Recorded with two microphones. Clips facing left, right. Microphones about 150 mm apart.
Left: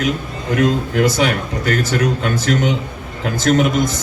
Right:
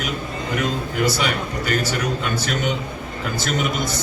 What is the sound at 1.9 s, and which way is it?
A man's voice, 90° left.